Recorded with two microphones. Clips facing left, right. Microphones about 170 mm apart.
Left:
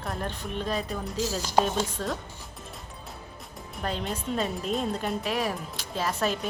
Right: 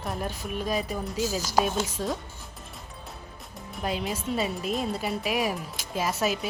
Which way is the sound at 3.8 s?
10° right (ahead or behind).